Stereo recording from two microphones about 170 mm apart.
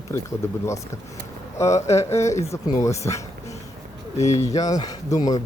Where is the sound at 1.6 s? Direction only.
20° left (ahead or behind).